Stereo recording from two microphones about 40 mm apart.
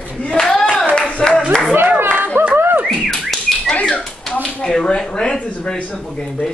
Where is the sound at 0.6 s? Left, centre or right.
Centre.